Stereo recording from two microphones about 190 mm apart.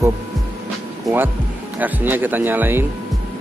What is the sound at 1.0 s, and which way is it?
Speech, 10° right (ahead or behind).